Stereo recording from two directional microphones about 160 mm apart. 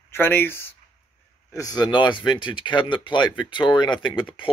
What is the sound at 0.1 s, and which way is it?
Speech, 15° left (ahead or behind).